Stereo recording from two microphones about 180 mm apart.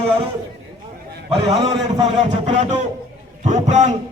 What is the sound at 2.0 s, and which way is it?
A man's voice, 40° right (ahead or behind).